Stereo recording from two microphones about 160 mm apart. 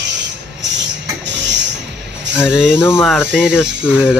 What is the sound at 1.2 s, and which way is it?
Music, 90° right.